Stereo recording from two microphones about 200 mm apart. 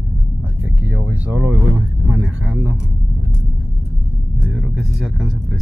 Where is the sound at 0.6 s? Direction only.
10° right (ahead or behind).